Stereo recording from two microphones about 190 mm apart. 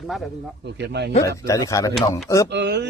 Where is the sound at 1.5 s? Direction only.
15° left (ahead or behind).